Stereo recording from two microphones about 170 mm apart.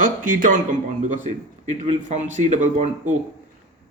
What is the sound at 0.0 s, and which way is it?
Speech, 50° right (ahead or behind).